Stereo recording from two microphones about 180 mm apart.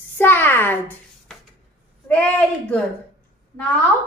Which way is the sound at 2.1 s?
5° left (ahead or behind).